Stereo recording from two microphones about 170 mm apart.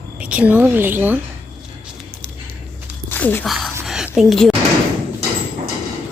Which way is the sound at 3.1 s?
10° left (ahead or behind).